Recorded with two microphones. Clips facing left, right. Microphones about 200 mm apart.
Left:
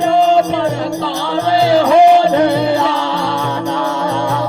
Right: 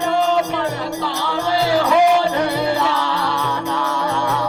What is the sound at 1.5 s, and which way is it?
Music, 25° left (ahead or behind).